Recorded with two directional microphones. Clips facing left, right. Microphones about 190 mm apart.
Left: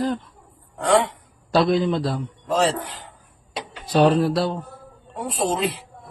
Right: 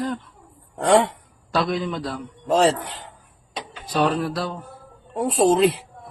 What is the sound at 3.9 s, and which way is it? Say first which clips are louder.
Speech: left 5 dB; 30° left (ahead or behind).